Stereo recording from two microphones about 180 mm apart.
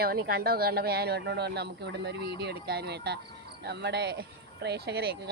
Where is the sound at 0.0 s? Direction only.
55° right (ahead or behind).